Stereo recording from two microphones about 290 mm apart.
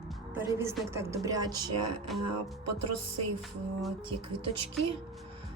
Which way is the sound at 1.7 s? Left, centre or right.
Right.